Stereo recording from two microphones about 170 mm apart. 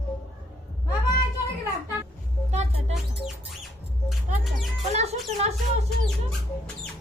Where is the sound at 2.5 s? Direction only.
40° right (ahead or behind).